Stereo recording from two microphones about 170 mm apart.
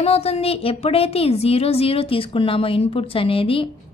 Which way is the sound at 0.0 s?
35° left (ahead or behind).